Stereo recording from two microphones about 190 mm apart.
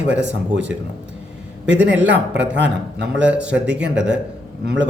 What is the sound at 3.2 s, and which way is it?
Speech, 5° right (ahead or behind).